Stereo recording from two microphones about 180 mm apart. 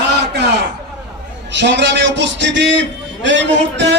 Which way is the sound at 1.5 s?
70° right (ahead or behind).